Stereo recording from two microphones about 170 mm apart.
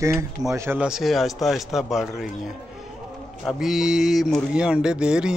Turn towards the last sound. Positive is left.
turn(degrees=-5)  # may be behind; listen again after turning